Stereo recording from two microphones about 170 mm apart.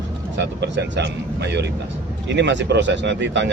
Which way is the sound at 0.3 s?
85° right.